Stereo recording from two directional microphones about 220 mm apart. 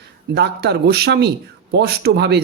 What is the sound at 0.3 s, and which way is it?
A man's voice, 50° right (ahead or behind).